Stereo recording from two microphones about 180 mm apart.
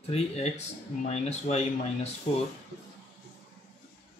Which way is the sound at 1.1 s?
35° left (ahead or behind).